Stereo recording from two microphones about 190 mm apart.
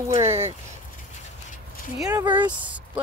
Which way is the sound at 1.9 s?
5° right (ahead or behind).